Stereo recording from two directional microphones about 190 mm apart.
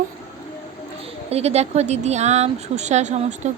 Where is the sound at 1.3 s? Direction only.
35° right (ahead or behind).